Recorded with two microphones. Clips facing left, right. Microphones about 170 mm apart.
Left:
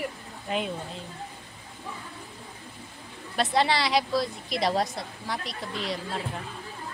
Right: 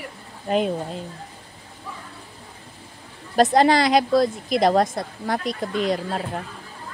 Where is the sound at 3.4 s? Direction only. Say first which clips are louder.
Right 8 dB; 45° right (ahead or behind).